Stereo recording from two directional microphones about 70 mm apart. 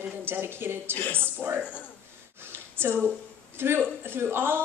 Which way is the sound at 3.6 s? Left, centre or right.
Right.